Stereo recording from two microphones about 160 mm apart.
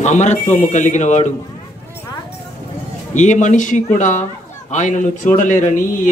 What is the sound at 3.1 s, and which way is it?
Speech, 50° left (ahead or behind).